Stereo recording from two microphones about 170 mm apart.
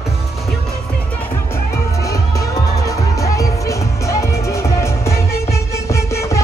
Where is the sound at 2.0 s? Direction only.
20° left (ahead or behind).